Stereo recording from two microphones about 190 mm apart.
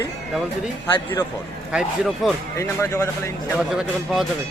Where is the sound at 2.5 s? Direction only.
15° left (ahead or behind).